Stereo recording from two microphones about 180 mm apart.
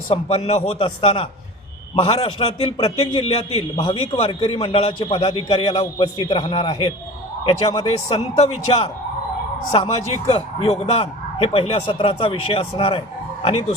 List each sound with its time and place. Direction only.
0.1 s a man's voice: 35° left (ahead or behind)